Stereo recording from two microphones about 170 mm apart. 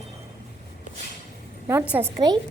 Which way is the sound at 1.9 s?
15° right (ahead or behind).